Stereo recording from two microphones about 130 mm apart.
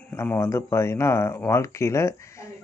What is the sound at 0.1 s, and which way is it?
A man's voice, 20° left (ahead or behind).